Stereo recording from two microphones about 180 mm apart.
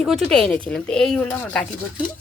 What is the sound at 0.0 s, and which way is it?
Speech, centre (ahead or behind).